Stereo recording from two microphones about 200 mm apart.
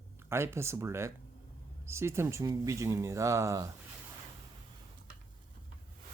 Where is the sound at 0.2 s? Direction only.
10° right (ahead or behind).